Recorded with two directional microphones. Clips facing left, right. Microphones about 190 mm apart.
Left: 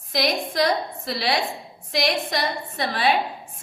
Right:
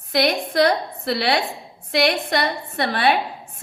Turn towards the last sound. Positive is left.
turn(degrees=-60)  # may be behind; listen again after turning